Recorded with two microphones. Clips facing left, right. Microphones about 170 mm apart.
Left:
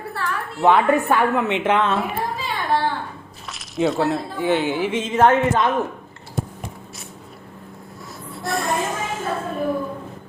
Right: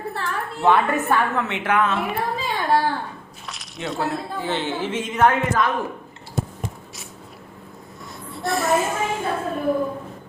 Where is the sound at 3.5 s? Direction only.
Centre (ahead or behind).